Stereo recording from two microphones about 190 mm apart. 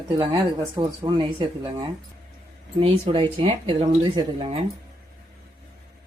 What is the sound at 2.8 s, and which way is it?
Speech, 30° right (ahead or behind).